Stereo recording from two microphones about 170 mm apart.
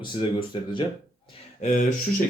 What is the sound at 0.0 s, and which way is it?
Speech, 30° left (ahead or behind).